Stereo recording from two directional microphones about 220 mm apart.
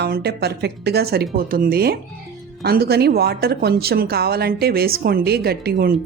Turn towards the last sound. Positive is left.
turn(degrees=-45)  # may be behind; listen again after turning